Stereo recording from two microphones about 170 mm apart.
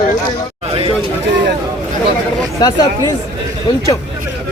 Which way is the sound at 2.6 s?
25° left (ahead or behind).